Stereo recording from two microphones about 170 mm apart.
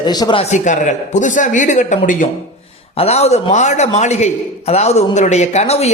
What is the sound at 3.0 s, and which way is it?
Speech, 40° left (ahead or behind).